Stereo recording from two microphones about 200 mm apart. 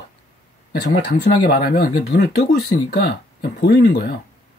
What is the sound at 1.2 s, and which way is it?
Speech, 50° left (ahead or behind).